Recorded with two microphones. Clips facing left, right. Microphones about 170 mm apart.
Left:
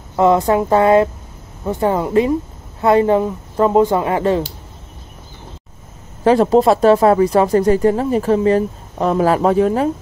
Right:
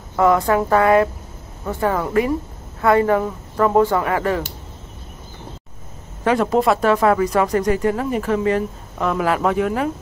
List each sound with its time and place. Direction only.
0.1 s speech: 25° left (ahead or behind)
6.2 s speech: 30° left (ahead or behind)